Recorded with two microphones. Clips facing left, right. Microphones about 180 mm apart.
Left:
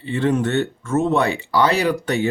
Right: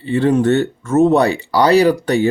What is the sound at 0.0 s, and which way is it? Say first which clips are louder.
Speech: right 5 dB; 35° right (ahead or behind).